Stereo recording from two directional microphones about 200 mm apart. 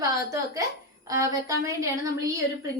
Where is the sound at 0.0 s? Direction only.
15° right (ahead or behind).